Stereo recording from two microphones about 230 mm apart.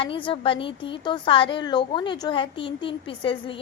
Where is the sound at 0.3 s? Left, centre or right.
Left.